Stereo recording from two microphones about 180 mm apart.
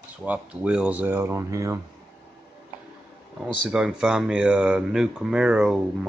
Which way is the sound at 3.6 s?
5° right (ahead or behind).